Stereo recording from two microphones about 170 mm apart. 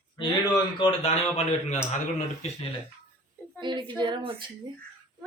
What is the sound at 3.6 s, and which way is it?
Speech, 25° right (ahead or behind).